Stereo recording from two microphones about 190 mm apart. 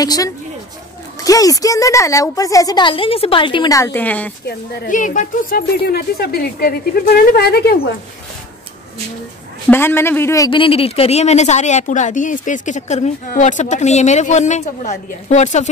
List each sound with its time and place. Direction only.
0.0 s speech: 20° left (ahead or behind)
4.5 s speech: 45° left (ahead or behind)
9.7 s a man's voice: 10° left (ahead or behind); by 15.7 s 40° left (ahead or behind)